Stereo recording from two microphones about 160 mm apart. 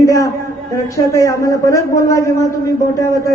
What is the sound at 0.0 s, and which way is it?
A man's voice, 20° left (ahead or behind).